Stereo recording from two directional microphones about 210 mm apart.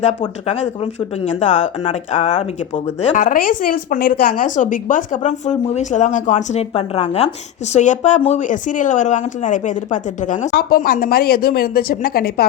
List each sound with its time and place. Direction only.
0.0 s speech: 30° left (ahead or behind)